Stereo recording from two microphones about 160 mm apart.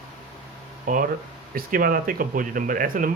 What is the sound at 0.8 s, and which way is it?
Speech, 55° right (ahead or behind).